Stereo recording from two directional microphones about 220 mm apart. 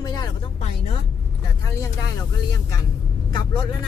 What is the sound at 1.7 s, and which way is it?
Speech, 15° left (ahead or behind).